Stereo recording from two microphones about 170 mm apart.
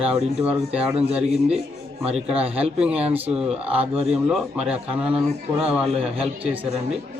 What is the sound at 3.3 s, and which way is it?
Speech, 5° right (ahead or behind).